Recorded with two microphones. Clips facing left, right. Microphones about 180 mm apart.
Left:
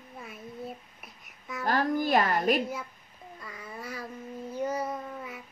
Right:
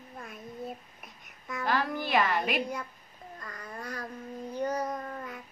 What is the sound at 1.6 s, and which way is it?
A woman's voice, 45° left (ahead or behind).